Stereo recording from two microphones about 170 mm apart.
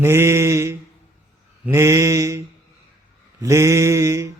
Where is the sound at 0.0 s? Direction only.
15° right (ahead or behind).